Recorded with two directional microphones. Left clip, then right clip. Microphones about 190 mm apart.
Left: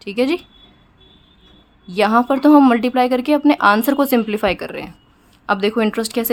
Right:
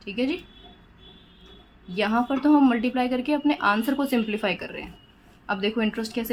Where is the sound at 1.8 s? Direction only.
45° left (ahead or behind).